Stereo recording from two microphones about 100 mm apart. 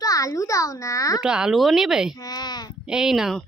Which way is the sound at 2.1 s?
40° left (ahead or behind).